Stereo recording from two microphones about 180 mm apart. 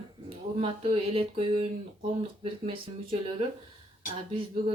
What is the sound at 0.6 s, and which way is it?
Speech, 30° right (ahead or behind).